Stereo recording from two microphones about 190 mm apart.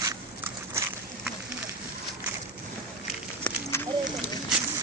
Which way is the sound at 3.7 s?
15° left (ahead or behind).